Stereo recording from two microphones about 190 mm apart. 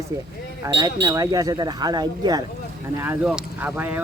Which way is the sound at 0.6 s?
20° right (ahead or behind).